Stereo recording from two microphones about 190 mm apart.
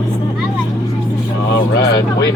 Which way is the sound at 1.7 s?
65° left (ahead or behind).